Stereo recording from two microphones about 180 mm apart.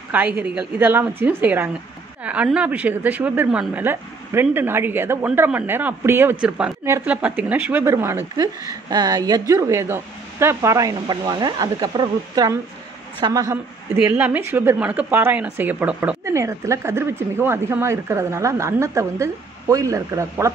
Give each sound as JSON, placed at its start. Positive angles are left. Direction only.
{"t": 0.1, "sound": "a woman's voice", "side_deg": -10}
{"t": 13.9, "sound": "speech", "side_deg": -10}